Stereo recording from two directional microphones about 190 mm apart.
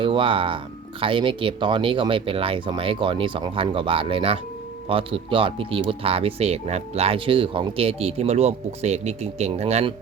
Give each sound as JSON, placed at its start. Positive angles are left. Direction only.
{"t": 0.0, "sound": "speech", "side_deg": -25}